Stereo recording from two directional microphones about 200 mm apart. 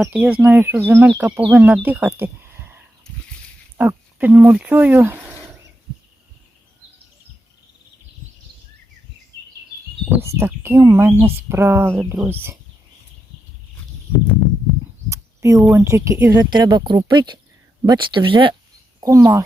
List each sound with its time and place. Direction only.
0.0 s speech: 5° right (ahead or behind)
3.8 s speech: 10° right (ahead or behind)
10.2 s speech: 10° right (ahead or behind)
15.1 s a sound: 15° right (ahead or behind)
15.7 s speech: 15° right (ahead or behind)
16.5 s speech: 20° right (ahead or behind)